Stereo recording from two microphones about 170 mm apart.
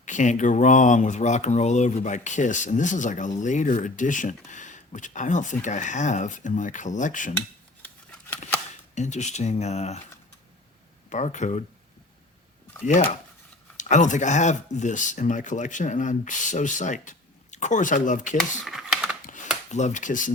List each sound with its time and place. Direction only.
0.0 s speech: 45° left (ahead or behind)
9.0 s speech: 45° left (ahead or behind)
11.1 s speech: 45° left (ahead or behind)
12.8 s speech: 45° left (ahead or behind)
18.3 s computer keyboard: centre (ahead or behind)
19.2 s a sound: 50° left (ahead or behind)
19.7 s speech: 45° left (ahead or behind)